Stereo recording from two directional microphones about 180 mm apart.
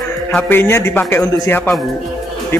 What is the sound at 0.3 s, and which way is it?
A man's voice, 10° left (ahead or behind).